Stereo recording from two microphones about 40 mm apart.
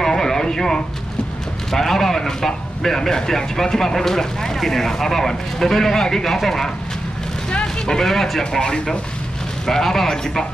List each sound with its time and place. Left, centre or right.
0.0 s a sound: centre
1.7 s a man's voice: centre
8.5 s a man's voice: centre